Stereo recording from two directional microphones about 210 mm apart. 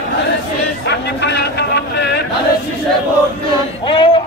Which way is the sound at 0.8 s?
55° left (ahead or behind).